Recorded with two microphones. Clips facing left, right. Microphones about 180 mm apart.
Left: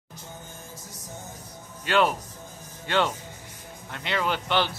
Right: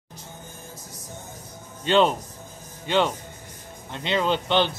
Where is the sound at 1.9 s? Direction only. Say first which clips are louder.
Right 4 dB; 25° right (ahead or behind).